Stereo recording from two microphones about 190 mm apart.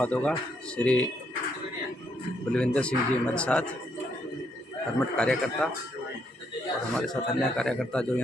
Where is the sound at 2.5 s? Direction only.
5° left (ahead or behind).